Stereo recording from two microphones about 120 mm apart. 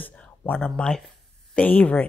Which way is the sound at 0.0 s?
10° left (ahead or behind).